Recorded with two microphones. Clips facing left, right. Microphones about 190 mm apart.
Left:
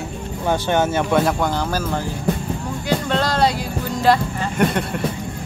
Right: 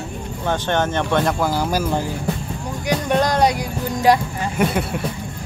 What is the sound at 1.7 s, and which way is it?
Speech, 10° right (ahead or behind).